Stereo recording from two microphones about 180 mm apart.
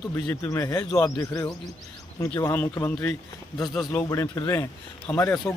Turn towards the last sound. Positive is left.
turn(degrees=15)  # may be behind; listen again after turning